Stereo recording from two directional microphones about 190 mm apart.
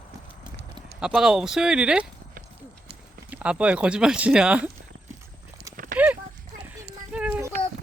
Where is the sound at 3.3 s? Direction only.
5° right (ahead or behind).